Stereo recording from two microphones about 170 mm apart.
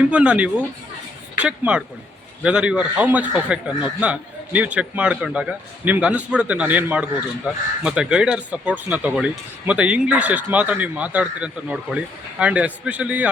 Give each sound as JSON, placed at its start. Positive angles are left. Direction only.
{"t": 0.1, "sound": "speech", "side_deg": -5}